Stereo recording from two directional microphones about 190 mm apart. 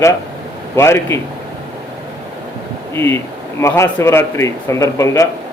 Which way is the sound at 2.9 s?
15° left (ahead or behind).